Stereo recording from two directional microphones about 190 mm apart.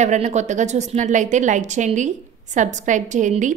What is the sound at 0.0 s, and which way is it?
A woman's voice, 40° right (ahead or behind).